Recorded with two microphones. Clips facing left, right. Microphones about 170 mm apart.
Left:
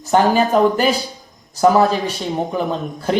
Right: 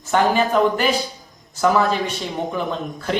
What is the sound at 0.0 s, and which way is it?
Speech, 40° left (ahead or behind).